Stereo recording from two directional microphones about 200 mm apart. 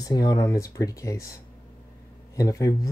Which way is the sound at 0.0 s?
20° left (ahead or behind).